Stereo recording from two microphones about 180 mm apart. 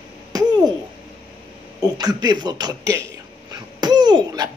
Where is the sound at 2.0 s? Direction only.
20° right (ahead or behind).